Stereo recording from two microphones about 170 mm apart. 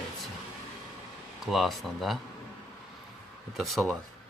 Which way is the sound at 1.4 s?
Centre (ahead or behind).